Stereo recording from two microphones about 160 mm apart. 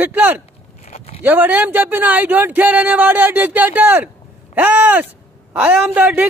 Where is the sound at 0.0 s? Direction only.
10° right (ahead or behind).